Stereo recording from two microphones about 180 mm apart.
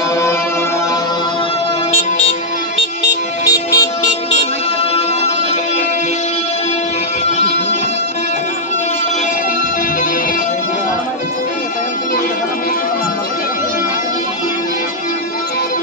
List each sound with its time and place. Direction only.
3.4 s music: 20° left (ahead or behind)